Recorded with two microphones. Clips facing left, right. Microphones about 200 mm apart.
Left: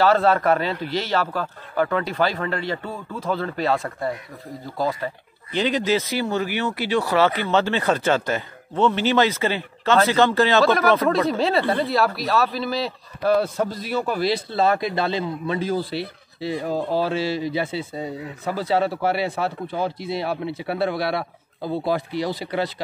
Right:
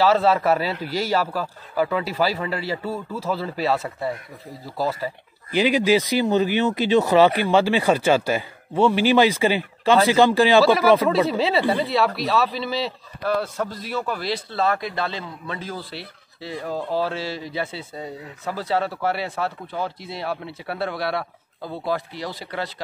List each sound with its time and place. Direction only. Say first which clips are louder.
0.0 s speech: even; centre (ahead or behind)
13.4 s speech: left 4 dB; 15° left (ahead or behind)